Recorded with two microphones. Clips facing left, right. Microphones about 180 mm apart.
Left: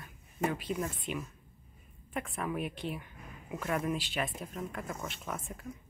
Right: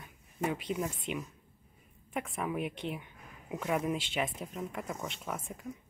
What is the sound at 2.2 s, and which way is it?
A woman's voice, 10° right (ahead or behind).